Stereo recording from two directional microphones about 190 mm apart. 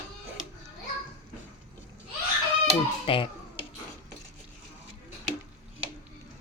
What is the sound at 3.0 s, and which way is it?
Speech, 25° left (ahead or behind).